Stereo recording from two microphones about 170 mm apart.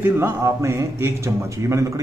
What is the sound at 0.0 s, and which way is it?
A man's voice, 10° right (ahead or behind).